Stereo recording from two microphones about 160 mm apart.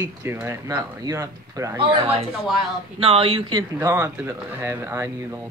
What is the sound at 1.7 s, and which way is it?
A child's voice, 35° right (ahead or behind).